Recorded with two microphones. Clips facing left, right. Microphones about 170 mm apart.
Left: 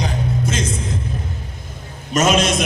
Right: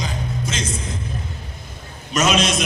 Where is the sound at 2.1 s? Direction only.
50° left (ahead or behind).